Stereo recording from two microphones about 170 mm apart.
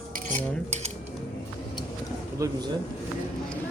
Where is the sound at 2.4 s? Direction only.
25° right (ahead or behind).